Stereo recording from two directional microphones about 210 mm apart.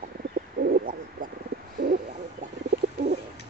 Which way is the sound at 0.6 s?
45° right (ahead or behind).